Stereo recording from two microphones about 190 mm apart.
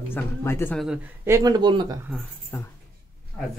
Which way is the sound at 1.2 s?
20° right (ahead or behind).